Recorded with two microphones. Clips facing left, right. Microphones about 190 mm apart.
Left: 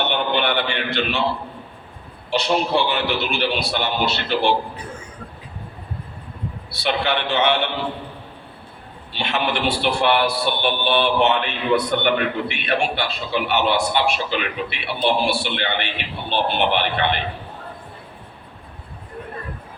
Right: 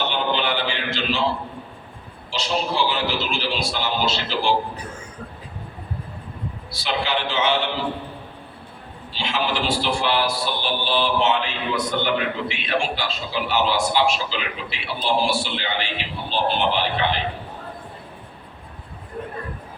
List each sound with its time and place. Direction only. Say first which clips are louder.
0.1 s mantra: left 2 dB; 60° left (ahead or behind)
2.3 s a man's voice: left 5 dB; 60° left (ahead or behind)
6.7 s a man's voice: left 3 dB; 65° left (ahead or behind)
9.1 s a man's voice: left 2 dB; 60° left (ahead or behind)